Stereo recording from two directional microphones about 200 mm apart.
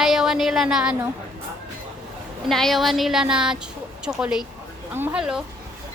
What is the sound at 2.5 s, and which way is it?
A woman's voice, centre (ahead or behind).